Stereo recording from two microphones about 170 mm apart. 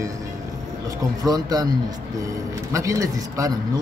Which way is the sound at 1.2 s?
25° right (ahead or behind).